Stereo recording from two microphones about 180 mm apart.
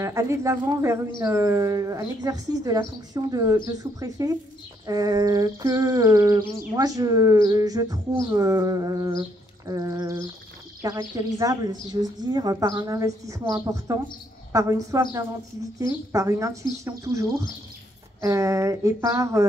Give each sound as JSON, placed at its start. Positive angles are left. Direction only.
{"t": 0.0, "sound": "speech", "side_deg": -15}
{"t": 1.2, "sound": "a sound", "side_deg": -15}
{"t": 14.5, "sound": "speech", "side_deg": -15}